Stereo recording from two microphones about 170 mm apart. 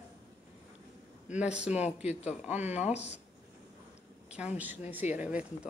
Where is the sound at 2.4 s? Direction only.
10° right (ahead or behind).